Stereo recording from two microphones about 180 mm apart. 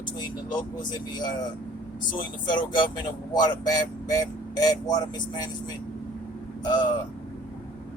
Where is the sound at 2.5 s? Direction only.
25° left (ahead or behind).